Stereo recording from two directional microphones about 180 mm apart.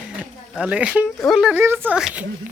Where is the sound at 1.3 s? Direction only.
5° right (ahead or behind).